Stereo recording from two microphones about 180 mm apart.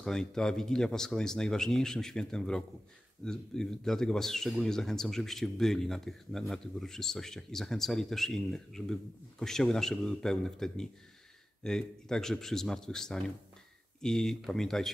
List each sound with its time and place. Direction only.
0.0 s speech: 5° left (ahead or behind)